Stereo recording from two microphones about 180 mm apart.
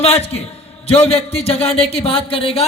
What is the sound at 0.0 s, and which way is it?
Speech, 35° left (ahead or behind).